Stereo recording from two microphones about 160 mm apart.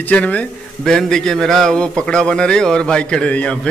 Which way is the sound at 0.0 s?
10° left (ahead or behind).